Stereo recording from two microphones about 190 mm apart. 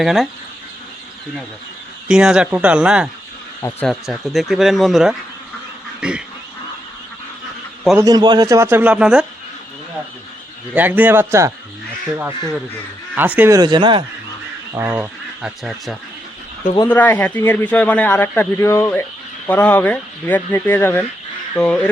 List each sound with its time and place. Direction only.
0.0 s speech: centre (ahead or behind)
2.0 s speech: 5° right (ahead or behind)
3.6 s a man's voice: 10° left (ahead or behind)
6.0 s duck: 5° right (ahead or behind)
7.9 s a man's voice: 20° right (ahead or behind)
10.8 s a man's voice: 10° right (ahead or behind)
13.1 s speech: 10° right (ahead or behind); by 14.0 s 25° right (ahead or behind)
14.7 s speech: 10° right (ahead or behind)
16.9 s a man's voice: 10° left (ahead or behind)